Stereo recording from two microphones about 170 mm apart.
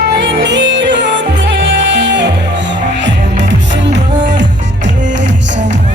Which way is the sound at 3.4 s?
90° right.